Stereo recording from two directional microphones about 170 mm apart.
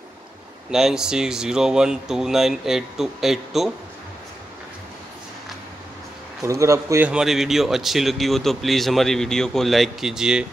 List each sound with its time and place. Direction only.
0.7 s speech: 5° right (ahead or behind)
6.4 s a man's voice: 15° right (ahead or behind)
7.1 s speech: 5° right (ahead or behind)